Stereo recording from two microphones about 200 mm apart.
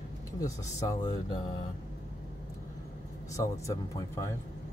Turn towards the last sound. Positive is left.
turn(degrees=15)  # may be behind; listen again after turning